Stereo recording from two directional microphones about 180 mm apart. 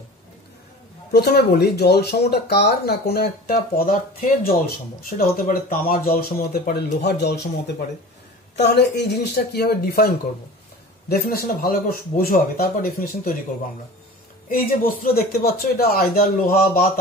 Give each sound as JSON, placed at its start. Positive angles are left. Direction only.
{"t": 1.1, "sound": "speech", "side_deg": 60}
{"t": 11.1, "sound": "speech", "side_deg": 60}
{"t": 14.5, "sound": "speech", "side_deg": 50}